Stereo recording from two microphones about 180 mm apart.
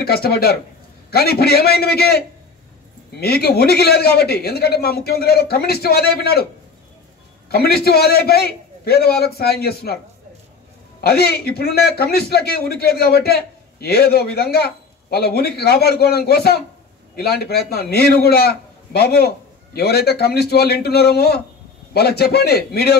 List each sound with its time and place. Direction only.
0.0 s a man's voice: 60° left (ahead or behind)
7.4 s a man's voice: 60° left (ahead or behind)
11.0 s a man's voice: 60° left (ahead or behind)